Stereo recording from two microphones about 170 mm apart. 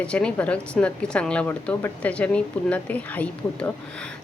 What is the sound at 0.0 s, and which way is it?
A woman's voice, 5° left (ahead or behind).